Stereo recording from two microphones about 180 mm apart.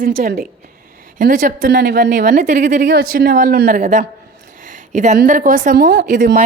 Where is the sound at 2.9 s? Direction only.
60° right (ahead or behind).